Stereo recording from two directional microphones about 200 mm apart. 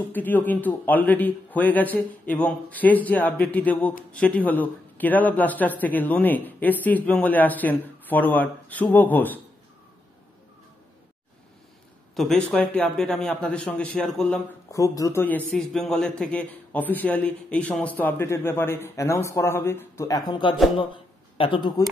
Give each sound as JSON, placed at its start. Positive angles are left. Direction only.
{"t": 0.1, "sound": "a man's voice", "side_deg": 10}
{"t": 12.2, "sound": "a man's voice", "side_deg": 5}
{"t": 14.7, "sound": "a man's voice", "side_deg": 15}
{"t": 20.9, "sound": "a sound", "side_deg": 25}